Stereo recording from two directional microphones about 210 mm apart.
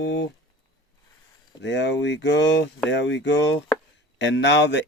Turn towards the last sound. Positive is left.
turn(degrees=55)  # may be behind; listen again after turning